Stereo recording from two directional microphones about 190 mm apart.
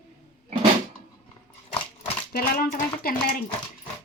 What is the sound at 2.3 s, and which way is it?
Speech, 50° left (ahead or behind).